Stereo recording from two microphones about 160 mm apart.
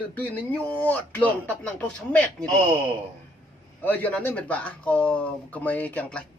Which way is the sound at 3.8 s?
10° left (ahead or behind).